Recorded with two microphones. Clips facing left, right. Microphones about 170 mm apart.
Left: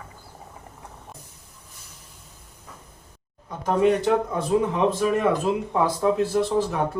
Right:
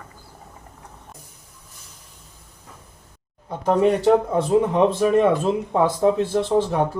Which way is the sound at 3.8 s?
30° right (ahead or behind).